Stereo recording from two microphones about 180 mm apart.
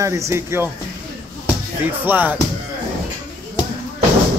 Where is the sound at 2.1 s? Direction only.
10° right (ahead or behind).